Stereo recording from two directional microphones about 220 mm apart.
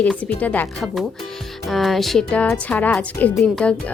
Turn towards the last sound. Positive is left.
turn(degrees=5)  # may be behind; listen again after turning